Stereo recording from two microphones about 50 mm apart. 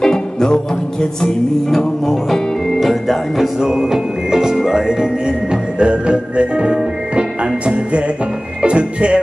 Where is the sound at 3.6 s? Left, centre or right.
Centre.